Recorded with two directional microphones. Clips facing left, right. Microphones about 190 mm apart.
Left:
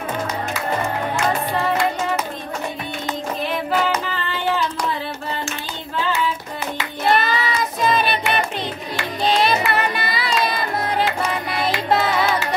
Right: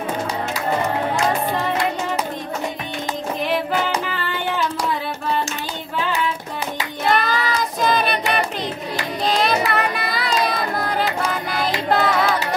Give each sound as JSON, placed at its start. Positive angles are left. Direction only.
{"t": 7.1, "sound": "child singing", "side_deg": 0}
{"t": 9.2, "sound": "music", "side_deg": 0}
{"t": 9.7, "sound": "child singing", "side_deg": 0}
{"t": 11.5, "sound": "music", "side_deg": 0}